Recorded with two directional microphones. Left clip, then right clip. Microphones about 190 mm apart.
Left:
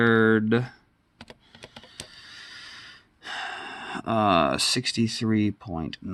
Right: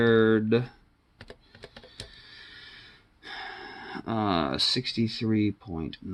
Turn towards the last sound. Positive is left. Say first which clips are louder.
# left 2 dB
turn(degrees=40)  # may be behind; listen again after turning